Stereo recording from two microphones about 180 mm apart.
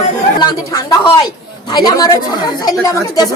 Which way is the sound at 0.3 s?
20° left (ahead or behind).